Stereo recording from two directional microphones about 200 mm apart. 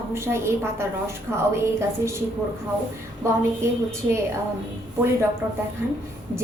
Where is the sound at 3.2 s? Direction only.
15° right (ahead or behind).